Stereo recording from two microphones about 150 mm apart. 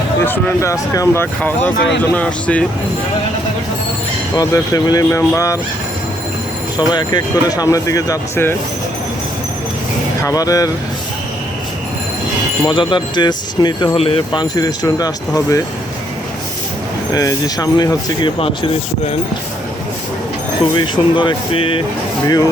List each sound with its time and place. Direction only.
0.2 s speech: 15° left (ahead or behind)
4.4 s speech: 25° left (ahead or behind)
6.7 s speech: 30° left (ahead or behind)
10.2 s speech: 25° left (ahead or behind)
12.6 s speech: 30° left (ahead or behind)
13.9 s speech: 40° left (ahead or behind)
14.5 s speech: 25° left (ahead or behind)
17.2 s speech: 25° left (ahead or behind)
18.3 s speech: 40° left (ahead or behind)
20.7 s speech: 30° left (ahead or behind)